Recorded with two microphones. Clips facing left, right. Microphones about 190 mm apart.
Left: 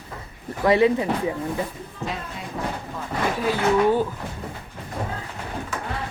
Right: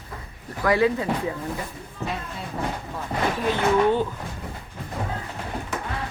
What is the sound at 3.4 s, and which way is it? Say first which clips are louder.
Speech: left 1 dB; 10° left (ahead or behind).